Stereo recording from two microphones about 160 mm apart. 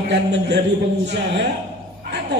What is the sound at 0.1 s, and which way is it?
Speech, 90° right.